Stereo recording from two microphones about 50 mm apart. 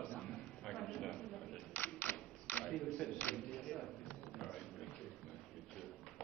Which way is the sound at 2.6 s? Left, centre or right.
Centre.